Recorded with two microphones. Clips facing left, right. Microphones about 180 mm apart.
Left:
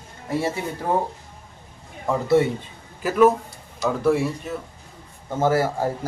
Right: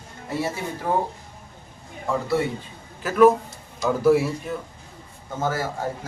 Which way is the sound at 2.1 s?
20° left (ahead or behind).